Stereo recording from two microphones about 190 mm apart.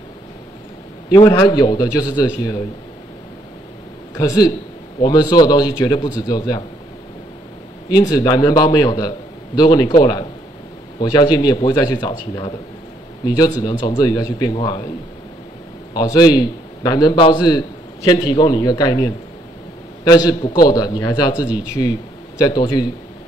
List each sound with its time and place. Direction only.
1.1 s a man's voice: 20° left (ahead or behind)
4.1 s a man's voice: 20° left (ahead or behind)
7.9 s a man's voice: 20° left (ahead or behind)
13.6 s a man's voice: 20° left (ahead or behind)
15.9 s a man's voice: 20° left (ahead or behind)